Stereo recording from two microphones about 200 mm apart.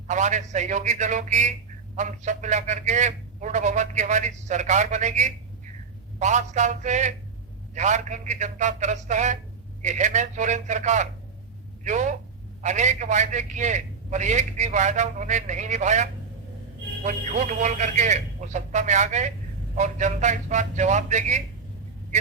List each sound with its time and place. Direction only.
0.1 s a man's voice: 35° right (ahead or behind)